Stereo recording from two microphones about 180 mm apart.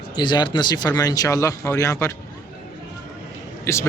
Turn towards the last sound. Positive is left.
turn(degrees=15)  # may be behind; listen again after turning